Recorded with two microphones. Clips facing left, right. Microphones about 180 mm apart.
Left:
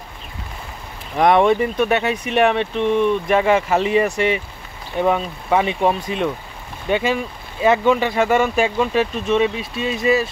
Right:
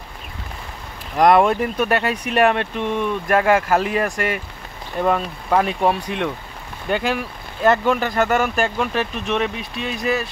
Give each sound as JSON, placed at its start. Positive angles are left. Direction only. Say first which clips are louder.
{"t": 1.1, "sound": "speech", "louder": "even", "side_deg": 0}